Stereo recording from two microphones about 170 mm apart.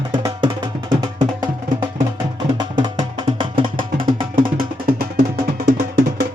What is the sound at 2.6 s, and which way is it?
Music, 25° right (ahead or behind).